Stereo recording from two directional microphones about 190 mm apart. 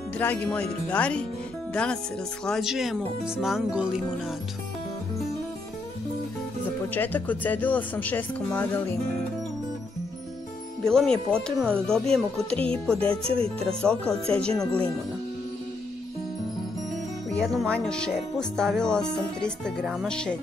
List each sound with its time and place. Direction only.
0.2 s speech: 10° left (ahead or behind)
6.9 s speech: 10° left (ahead or behind)
10.9 s speech: 5° left (ahead or behind)
12.5 s music: 30° right (ahead or behind)
13.7 s speech: 5° left (ahead or behind)
17.3 s speech: 5° left (ahead or behind)